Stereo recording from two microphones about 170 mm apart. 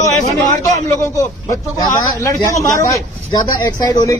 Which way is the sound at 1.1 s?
20° left (ahead or behind).